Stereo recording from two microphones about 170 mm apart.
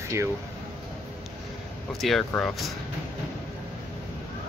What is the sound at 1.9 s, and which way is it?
Speech, centre (ahead or behind).